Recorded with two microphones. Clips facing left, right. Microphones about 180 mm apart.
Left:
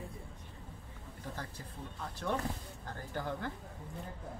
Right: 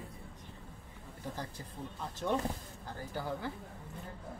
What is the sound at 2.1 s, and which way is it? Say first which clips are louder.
Speech: right 3 dB; 20° right (ahead or behind).